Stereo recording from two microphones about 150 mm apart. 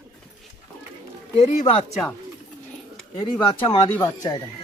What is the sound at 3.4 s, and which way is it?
Speech, 30° left (ahead or behind).